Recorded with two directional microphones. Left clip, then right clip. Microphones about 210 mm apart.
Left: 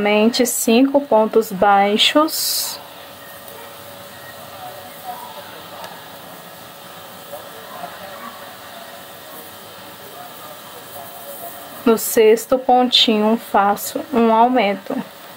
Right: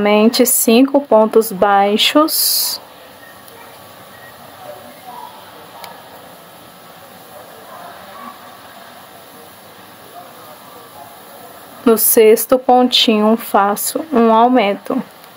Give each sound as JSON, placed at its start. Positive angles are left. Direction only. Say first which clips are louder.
{"t": 0.0, "sound": "speech", "louder": "right 4 dB", "side_deg": -15}
{"t": 11.8, "sound": "speech", "louder": "right 3 dB", "side_deg": -15}